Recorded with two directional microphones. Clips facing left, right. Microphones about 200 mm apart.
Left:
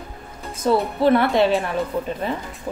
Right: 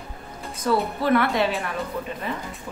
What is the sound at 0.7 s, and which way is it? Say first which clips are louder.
Speech: left 4 dB; 25° left (ahead or behind).